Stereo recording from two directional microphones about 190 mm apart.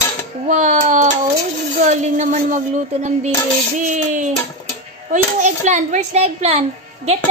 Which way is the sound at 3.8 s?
40° right (ahead or behind).